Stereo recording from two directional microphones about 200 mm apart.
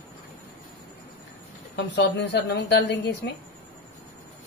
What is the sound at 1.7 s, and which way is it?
A woman's voice, 60° left (ahead or behind).